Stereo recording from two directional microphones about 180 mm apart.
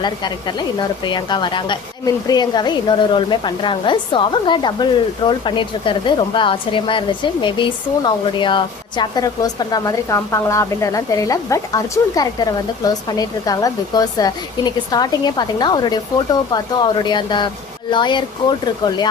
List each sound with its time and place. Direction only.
0.0 s speech: 25° left (ahead or behind)